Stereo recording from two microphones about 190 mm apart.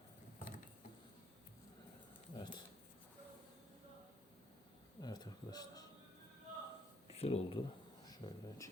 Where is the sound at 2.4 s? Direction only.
25° left (ahead or behind).